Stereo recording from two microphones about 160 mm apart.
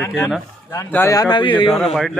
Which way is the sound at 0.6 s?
15° left (ahead or behind).